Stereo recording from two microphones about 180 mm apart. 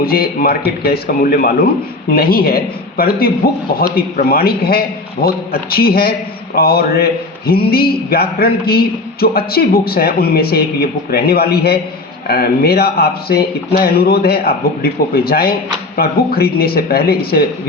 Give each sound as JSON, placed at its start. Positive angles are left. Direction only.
{"t": 0.0, "sound": "a man's voice", "side_deg": 55}